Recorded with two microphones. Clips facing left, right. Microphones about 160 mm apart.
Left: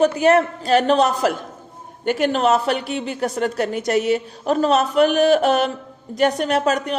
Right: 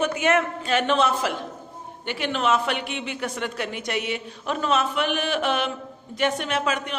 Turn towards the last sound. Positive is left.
turn(degrees=40)  # may be behind; listen again after turning